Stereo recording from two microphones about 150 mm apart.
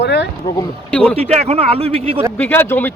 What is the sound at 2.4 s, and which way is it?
Speech, 15° left (ahead or behind).